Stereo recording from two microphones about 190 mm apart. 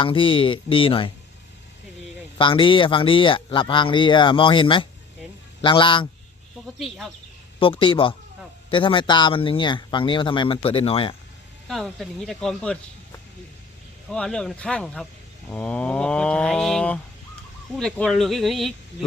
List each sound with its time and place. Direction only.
0.0 s speech: 25° left (ahead or behind)
2.4 s speech: 25° left (ahead or behind)
6.7 s speech: centre (ahead or behind)
7.6 s speech: 25° left (ahead or behind)
11.7 s speech: centre (ahead or behind)
14.1 s speech: 5° left (ahead or behind)